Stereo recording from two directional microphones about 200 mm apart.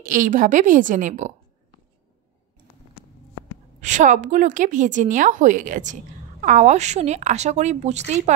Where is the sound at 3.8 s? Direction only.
40° right (ahead or behind).